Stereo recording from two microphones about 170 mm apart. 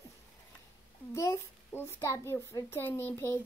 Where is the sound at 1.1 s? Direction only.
15° left (ahead or behind).